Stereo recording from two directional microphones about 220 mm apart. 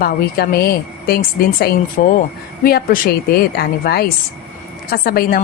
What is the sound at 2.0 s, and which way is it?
A woman's voice, 40° left (ahead or behind).